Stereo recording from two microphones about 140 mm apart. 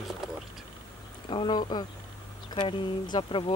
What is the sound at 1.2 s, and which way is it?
Speech, 35° left (ahead or behind).